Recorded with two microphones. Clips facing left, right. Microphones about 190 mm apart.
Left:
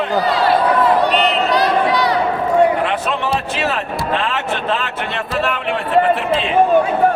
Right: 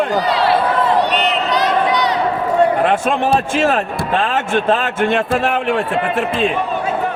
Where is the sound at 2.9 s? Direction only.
50° right (ahead or behind).